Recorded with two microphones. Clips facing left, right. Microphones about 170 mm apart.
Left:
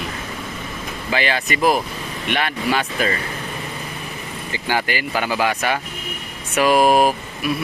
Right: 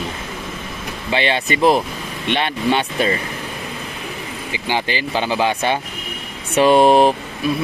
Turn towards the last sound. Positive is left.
turn(degrees=-25)  # may be behind; listen again after turning